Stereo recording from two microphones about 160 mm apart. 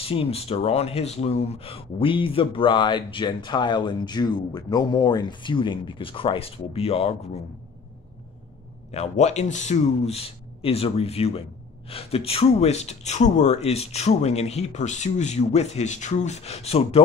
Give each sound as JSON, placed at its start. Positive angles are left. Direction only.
{"t": 0.0, "sound": "speech", "side_deg": 35}
{"t": 8.9, "sound": "speech", "side_deg": 45}